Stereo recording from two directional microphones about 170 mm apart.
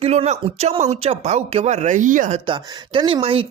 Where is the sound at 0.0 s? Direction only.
40° right (ahead or behind).